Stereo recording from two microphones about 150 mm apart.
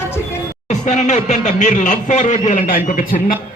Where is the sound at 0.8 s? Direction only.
50° left (ahead or behind).